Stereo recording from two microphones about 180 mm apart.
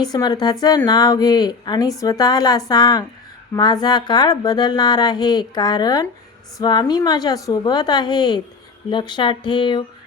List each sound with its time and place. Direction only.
0.0 s speech: 20° left (ahead or behind)